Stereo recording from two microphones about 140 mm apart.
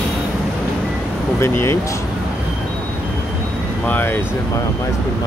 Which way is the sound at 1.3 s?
20° left (ahead or behind).